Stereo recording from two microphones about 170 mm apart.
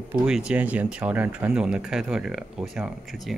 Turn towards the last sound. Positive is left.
turn(degrees=0)  # may be behind; listen again after turning